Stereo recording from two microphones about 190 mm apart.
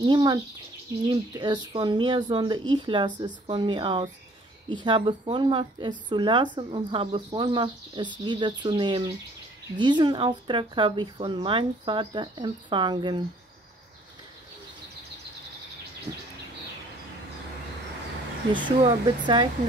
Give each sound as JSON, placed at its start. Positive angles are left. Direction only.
{"t": 0.0, "sound": "speech", "side_deg": -25}
{"t": 18.5, "sound": "speech", "side_deg": -30}